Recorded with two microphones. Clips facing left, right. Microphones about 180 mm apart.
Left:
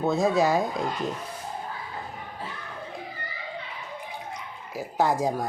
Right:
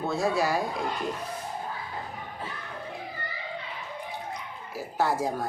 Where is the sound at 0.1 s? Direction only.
20° left (ahead or behind).